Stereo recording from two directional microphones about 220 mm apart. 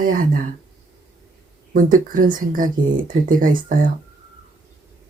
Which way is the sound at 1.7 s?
40° right (ahead or behind).